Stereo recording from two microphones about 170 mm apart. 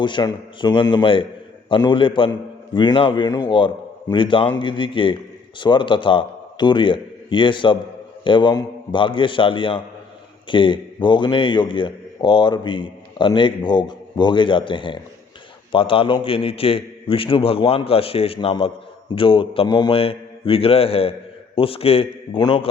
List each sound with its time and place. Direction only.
0.0 s a man's voice: 25° left (ahead or behind)